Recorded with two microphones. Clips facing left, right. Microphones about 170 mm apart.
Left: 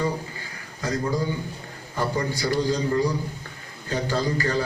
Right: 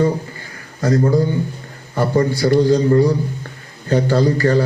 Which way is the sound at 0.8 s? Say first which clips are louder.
Right 10 dB; 45° right (ahead or behind).